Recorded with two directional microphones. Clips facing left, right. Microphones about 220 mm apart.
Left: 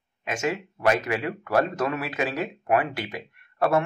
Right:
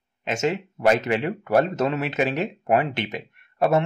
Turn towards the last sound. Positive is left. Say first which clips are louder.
# right 2 dB
turn(degrees=-20)  # may be behind; listen again after turning